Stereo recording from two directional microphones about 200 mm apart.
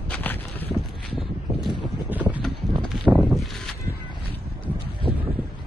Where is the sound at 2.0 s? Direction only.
10° right (ahead or behind).